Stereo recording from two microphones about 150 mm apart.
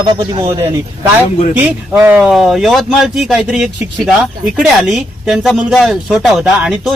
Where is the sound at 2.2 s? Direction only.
Centre (ahead or behind).